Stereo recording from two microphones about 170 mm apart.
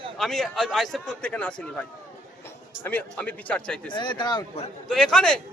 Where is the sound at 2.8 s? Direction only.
10° left (ahead or behind).